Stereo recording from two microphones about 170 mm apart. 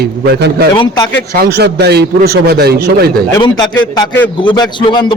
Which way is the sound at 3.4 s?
25° left (ahead or behind).